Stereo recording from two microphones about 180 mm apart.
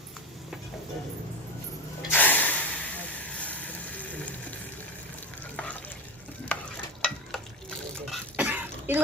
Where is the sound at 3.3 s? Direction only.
10° left (ahead or behind).